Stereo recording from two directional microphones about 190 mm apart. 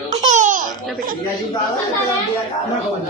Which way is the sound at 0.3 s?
40° right (ahead or behind).